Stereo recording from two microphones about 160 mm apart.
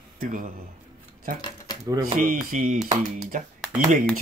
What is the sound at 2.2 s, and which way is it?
Speech, 60° right (ahead or behind).